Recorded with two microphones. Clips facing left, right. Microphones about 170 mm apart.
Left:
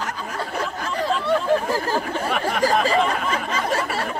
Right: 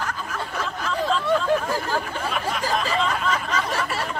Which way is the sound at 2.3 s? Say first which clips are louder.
Left 5 dB; 60° left (ahead or behind).